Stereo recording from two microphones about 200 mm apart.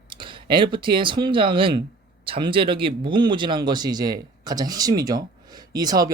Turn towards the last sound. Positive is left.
turn(degrees=-20)  # may be behind; listen again after turning